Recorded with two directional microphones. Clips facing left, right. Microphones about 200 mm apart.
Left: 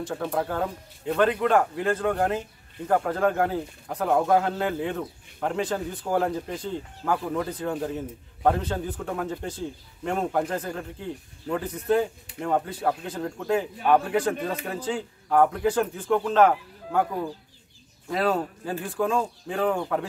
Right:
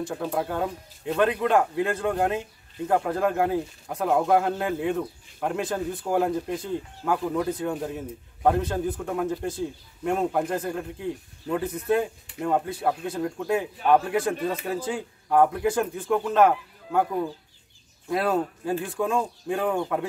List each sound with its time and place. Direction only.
0.1 s a man's voice: 5° right (ahead or behind)